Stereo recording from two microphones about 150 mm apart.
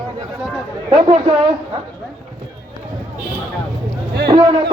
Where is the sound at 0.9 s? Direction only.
40° right (ahead or behind).